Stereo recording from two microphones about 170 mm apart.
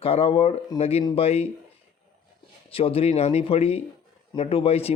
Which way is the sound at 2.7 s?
35° left (ahead or behind).